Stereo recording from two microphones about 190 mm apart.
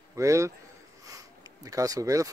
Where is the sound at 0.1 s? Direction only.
15° right (ahead or behind).